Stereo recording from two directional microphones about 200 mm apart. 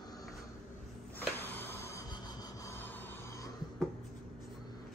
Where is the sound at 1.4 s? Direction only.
10° left (ahead or behind).